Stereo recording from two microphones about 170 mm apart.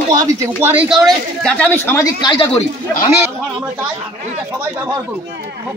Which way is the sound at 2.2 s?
30° left (ahead or behind).